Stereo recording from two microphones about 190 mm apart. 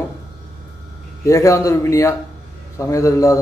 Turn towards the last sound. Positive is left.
turn(degrees=15)  # may be behind; listen again after turning